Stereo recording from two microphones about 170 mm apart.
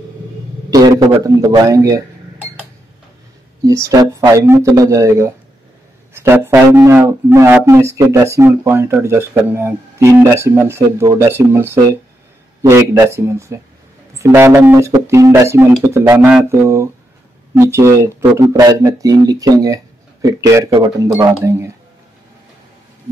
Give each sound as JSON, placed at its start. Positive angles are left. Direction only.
{"t": 0.7, "sound": "a man's voice", "side_deg": -20}
{"t": 3.6, "sound": "speech", "side_deg": -20}
{"t": 21.1, "sound": "speech", "side_deg": -10}